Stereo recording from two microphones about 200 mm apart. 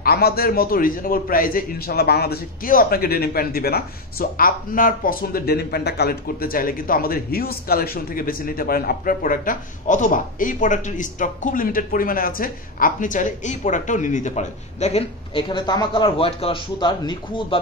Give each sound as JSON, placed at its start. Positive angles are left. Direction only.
{"t": 0.0, "sound": "a man's voice", "side_deg": 50}